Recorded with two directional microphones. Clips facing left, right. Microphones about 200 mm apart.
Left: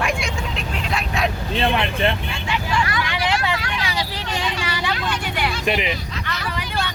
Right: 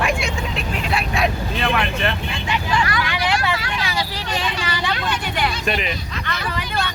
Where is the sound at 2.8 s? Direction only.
25° left (ahead or behind).